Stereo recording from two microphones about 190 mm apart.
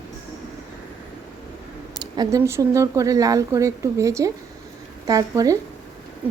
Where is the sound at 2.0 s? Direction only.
20° right (ahead or behind).